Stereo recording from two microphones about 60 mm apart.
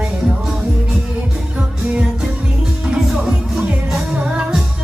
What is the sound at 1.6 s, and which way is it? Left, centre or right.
Music, centre.